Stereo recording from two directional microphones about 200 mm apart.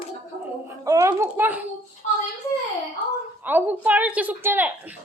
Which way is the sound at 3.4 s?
10° right (ahead or behind).